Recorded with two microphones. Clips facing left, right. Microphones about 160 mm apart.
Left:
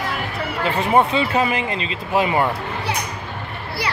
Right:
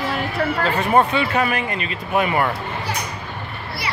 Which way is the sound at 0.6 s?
20° left (ahead or behind).